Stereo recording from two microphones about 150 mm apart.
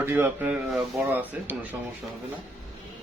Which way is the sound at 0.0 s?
15° right (ahead or behind).